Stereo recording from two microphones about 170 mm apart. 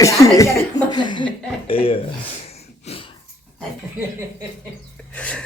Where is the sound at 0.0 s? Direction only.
20° left (ahead or behind).